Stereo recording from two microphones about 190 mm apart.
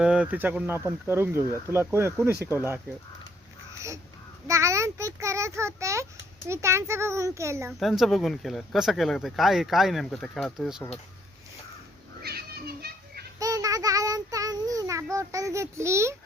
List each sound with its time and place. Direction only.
0.0 s speech: 5° right (ahead or behind)
3.8 s crow: 15° right (ahead or behind)
4.4 s speech: 15° right (ahead or behind)
7.7 s speech: centre (ahead or behind)
12.2 s children playing: 55° right (ahead or behind)
13.4 s child singing: 15° right (ahead or behind)
15.1 s speech: 15° right (ahead or behind)